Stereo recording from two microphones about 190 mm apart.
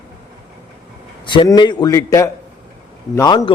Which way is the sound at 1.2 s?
25° left (ahead or behind).